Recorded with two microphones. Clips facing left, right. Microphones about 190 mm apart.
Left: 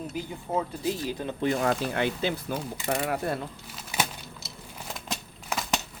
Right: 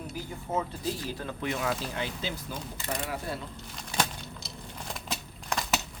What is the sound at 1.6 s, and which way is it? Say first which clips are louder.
Speech: left 6 dB; 60° left (ahead or behind).